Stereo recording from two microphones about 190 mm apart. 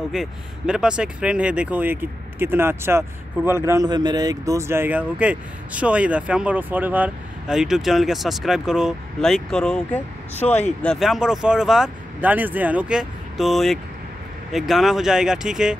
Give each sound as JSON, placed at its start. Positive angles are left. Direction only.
{"t": 0.1, "sound": "speech", "side_deg": -5}
{"t": 10.4, "sound": "speech", "side_deg": 35}
{"t": 10.8, "sound": "speech", "side_deg": 0}